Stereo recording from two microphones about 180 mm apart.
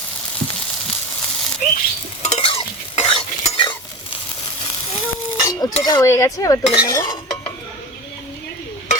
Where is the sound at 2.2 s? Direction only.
35° left (ahead or behind).